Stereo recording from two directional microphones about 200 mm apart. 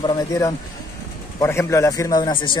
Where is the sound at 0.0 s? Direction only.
20° left (ahead or behind).